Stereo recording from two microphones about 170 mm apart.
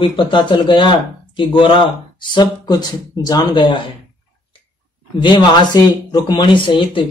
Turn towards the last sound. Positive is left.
turn(degrees=30)  # may be behind; listen again after turning